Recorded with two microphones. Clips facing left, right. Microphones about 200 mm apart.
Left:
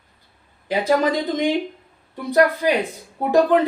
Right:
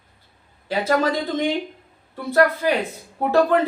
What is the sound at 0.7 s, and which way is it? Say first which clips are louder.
Speech: left 2 dB; 15° left (ahead or behind).